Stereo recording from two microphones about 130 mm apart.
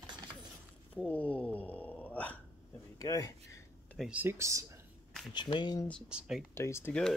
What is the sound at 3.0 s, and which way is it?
Speech, 25° left (ahead or behind).